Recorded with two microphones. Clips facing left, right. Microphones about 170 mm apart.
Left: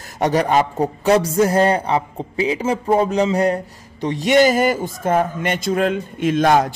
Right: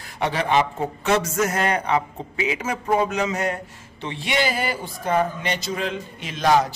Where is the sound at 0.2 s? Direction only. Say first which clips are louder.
Left 4 dB; 45° left (ahead or behind).